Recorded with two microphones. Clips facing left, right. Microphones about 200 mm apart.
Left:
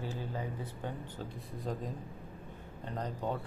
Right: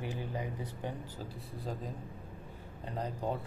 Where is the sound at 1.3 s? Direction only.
Centre (ahead or behind).